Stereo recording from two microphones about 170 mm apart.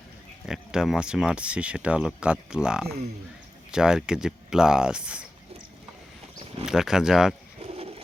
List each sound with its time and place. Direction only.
0.4 s speech: 5° right (ahead or behind)
6.7 s speech: 5° right (ahead or behind)
7.6 s a sound: 35° right (ahead or behind)